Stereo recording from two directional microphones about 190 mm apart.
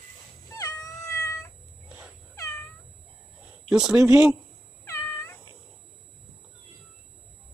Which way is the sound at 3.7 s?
5° right (ahead or behind).